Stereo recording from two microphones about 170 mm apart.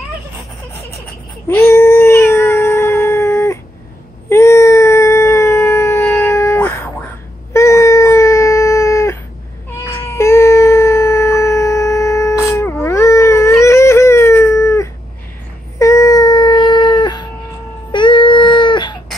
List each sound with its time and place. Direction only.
1.5 s cat: 15° left (ahead or behind)
4.3 s a sound: 15° left (ahead or behind)
15.8 s cat: 20° left (ahead or behind)
17.9 s baby cry: 30° left (ahead or behind)